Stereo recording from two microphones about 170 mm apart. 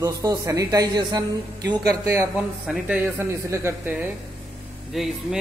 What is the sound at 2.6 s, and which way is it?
Speech, 5° right (ahead or behind).